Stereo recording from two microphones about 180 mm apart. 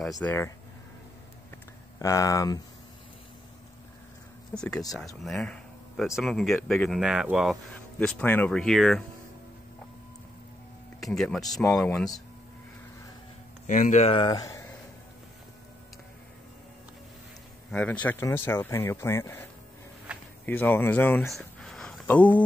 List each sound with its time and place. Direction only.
0.2 s speech: 15° left (ahead or behind)
2.0 s speech: 20° left (ahead or behind)
4.6 s speech: 5° left (ahead or behind)
8.0 s speech: 10° left (ahead or behind)
11.0 s speech: centre (ahead or behind)
13.7 s speech: 45° left (ahead or behind); by 14.7 s 15° left (ahead or behind)
17.6 s speech: 10° left (ahead or behind)
20.1 s a sound: 5° right (ahead or behind)
20.4 s speech: 10° left (ahead or behind)
21.3 s a sound: 5° left (ahead or behind)